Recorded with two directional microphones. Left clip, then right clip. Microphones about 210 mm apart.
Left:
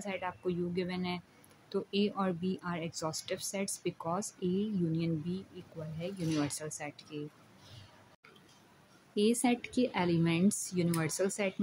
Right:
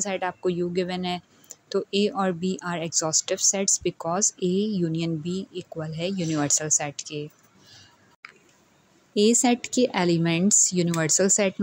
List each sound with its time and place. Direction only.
0.0 s speech: 30° right (ahead or behind)
9.1 s speech: 30° right (ahead or behind)